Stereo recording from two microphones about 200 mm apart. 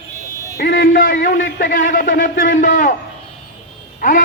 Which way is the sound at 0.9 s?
40° left (ahead or behind).